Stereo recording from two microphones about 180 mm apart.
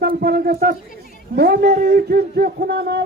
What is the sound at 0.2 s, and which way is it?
A man's voice, 60° right (ahead or behind).